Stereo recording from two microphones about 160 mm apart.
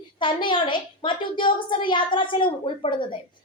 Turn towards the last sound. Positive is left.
turn(degrees=30)  # may be behind; listen again after turning